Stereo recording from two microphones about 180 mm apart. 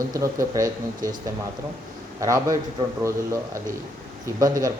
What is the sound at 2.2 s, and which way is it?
Speech, 15° right (ahead or behind).